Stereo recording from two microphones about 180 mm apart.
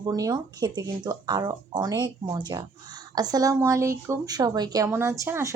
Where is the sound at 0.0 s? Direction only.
20° right (ahead or behind).